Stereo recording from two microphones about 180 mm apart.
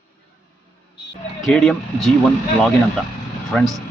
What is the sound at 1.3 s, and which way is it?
Speech, centre (ahead or behind).